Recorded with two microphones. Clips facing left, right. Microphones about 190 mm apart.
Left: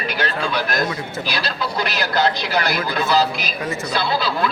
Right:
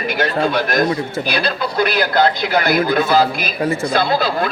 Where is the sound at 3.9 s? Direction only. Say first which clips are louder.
Right 2 dB; 45° right (ahead or behind).